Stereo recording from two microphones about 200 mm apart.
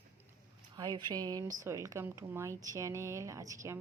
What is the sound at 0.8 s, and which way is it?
Speech, 20° right (ahead or behind).